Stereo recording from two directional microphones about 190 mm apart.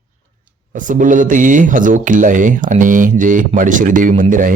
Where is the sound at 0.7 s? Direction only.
45° right (ahead or behind).